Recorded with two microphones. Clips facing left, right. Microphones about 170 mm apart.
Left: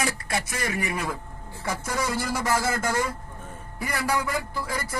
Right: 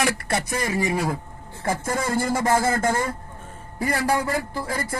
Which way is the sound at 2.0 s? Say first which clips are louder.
Right 6 dB; 50° right (ahead or behind).